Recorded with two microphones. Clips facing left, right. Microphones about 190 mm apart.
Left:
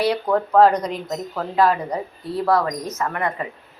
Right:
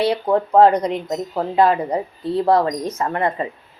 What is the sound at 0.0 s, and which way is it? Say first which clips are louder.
Speech: right 2 dB; 25° right (ahead or behind).